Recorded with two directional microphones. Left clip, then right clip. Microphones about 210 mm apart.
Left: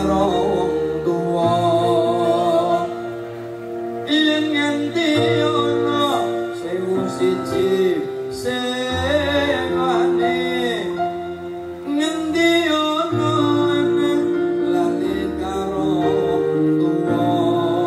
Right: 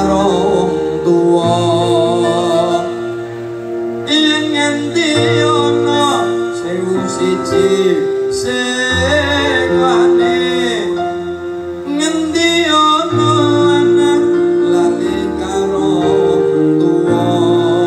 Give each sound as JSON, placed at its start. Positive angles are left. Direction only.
{"t": 4.1, "sound": "music", "side_deg": -50}
{"t": 7.2, "sound": "music", "side_deg": -50}
{"t": 8.8, "sound": "music", "side_deg": -50}
{"t": 12.0, "sound": "music", "side_deg": -50}